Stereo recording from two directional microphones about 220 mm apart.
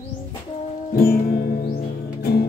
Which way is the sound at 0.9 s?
45° left (ahead or behind).